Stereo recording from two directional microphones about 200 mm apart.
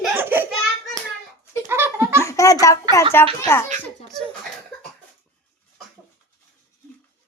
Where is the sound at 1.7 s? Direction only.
10° right (ahead or behind).